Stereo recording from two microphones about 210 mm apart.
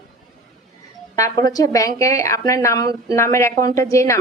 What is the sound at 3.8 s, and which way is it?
Speech, 15° left (ahead or behind).